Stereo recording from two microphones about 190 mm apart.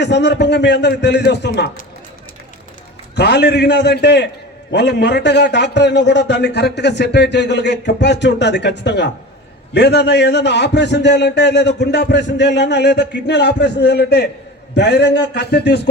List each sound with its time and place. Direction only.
0.0 s a man's voice: 65° left (ahead or behind)
3.2 s a man's voice: 60° left (ahead or behind)